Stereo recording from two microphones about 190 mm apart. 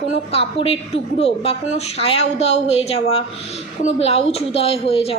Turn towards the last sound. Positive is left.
turn(degrees=30)  # may be behind; listen again after turning